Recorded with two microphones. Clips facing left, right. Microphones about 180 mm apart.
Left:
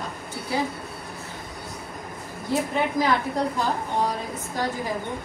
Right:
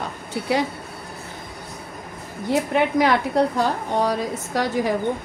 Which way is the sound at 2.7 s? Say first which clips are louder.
Right 5 dB; 70° right (ahead or behind).